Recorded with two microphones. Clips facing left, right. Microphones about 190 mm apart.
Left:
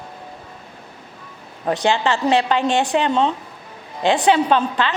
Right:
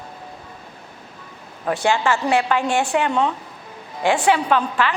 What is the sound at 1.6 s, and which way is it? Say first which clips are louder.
A woman's voice: left 1 dB; 20° left (ahead or behind).